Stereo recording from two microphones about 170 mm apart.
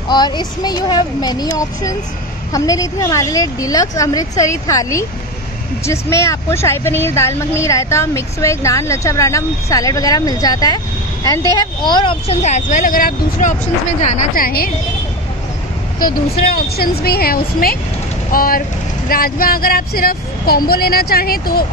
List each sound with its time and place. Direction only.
0.1 s a woman's voice: 25° left (ahead or behind); by 14.7 s 60° left (ahead or behind)
16.3 s speech: 65° left (ahead or behind)